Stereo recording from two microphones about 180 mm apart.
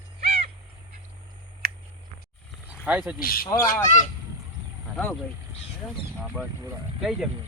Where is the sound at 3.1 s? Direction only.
55° left (ahead or behind).